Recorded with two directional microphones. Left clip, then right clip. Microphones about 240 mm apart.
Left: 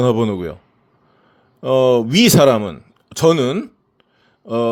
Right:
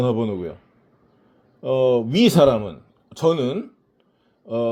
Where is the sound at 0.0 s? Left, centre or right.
Left.